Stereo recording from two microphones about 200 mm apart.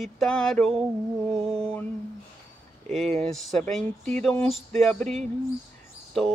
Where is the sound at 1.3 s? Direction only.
30° right (ahead or behind).